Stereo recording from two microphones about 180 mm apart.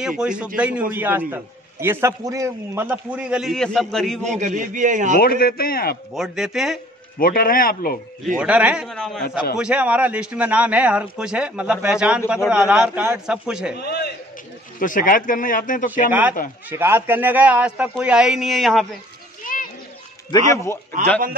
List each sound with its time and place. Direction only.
0.2 s a man's voice: 5° right (ahead or behind)
4.2 s a man's voice: 45° right (ahead or behind)
5.2 s a man's voice: 55° left (ahead or behind)
6.1 s a man's voice: centre (ahead or behind)
7.2 s speech: 55° left (ahead or behind)
8.4 s a man's voice: 5° right (ahead or behind)
13.7 s a man's voice: 65° left (ahead or behind)
14.8 s speech: 50° left (ahead or behind)
16.1 s a man's voice: 10° right (ahead or behind)
19.4 s children playing: 50° left (ahead or behind)
20.5 s a man's voice: 15° left (ahead or behind)